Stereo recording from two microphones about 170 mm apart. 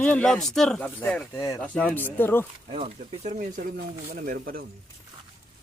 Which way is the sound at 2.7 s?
35° right (ahead or behind).